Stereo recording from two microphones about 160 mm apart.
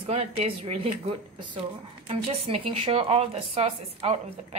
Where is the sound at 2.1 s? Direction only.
35° right (ahead or behind).